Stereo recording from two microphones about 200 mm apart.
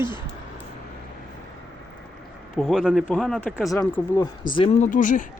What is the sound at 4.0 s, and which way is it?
Speech, 15° left (ahead or behind).